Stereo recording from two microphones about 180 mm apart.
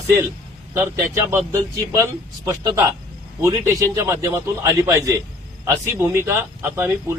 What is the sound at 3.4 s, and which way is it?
A man's voice, 15° right (ahead or behind).